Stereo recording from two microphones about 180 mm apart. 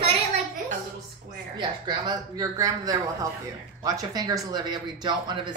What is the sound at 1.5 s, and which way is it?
Speech, 25° right (ahead or behind).